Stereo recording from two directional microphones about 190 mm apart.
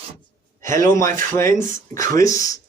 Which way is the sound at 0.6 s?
40° right (ahead or behind).